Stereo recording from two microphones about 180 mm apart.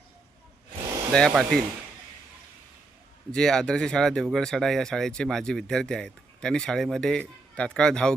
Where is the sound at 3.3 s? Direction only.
5° left (ahead or behind).